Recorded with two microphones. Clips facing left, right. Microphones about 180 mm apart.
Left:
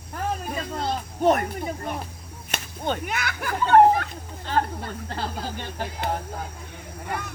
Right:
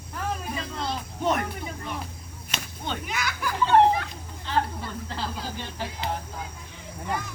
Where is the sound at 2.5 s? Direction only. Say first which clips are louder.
Left 5 dB; 50° left (ahead or behind).